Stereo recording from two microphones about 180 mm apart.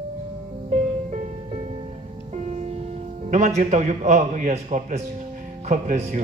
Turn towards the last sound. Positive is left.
turn(degrees=-40)  # may be behind; listen again after turning